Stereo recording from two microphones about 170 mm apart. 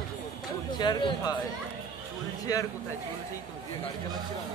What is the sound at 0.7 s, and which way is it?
Speech, 25° left (ahead or behind).